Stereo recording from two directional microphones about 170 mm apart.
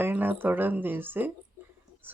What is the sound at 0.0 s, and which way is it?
Speech, 10° right (ahead or behind).